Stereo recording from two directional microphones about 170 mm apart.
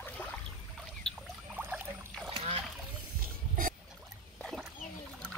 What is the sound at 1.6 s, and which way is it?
Pour, 10° right (ahead or behind).